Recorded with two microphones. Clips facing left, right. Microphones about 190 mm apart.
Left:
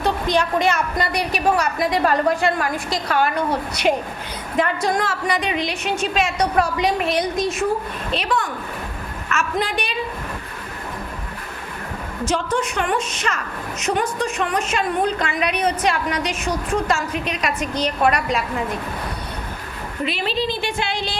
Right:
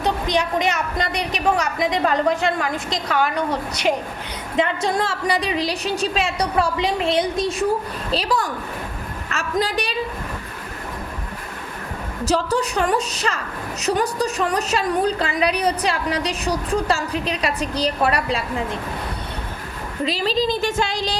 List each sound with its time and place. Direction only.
0.0 s a woman's voice: 15° right (ahead or behind)
4.5 s a woman's voice: 25° right (ahead or behind)
9.3 s a sound: 35° right (ahead or behind)
12.2 s a woman's voice: 35° right (ahead or behind)
20.1 s a woman's voice: 35° right (ahead or behind)